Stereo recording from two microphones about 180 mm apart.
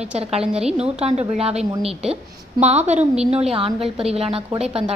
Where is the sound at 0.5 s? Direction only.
5° right (ahead or behind).